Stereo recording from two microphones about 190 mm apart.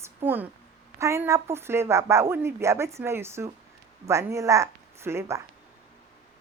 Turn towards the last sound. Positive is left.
turn(degrees=-15)  # may be behind; listen again after turning